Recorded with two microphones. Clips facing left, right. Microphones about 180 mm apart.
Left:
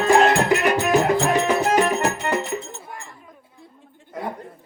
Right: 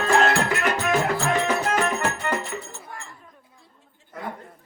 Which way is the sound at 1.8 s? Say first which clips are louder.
Left 4 dB; 35° left (ahead or behind).